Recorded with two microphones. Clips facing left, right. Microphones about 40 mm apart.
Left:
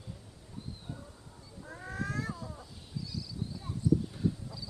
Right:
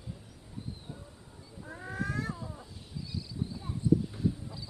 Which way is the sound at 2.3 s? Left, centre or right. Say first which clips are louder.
Right 1 dB; right.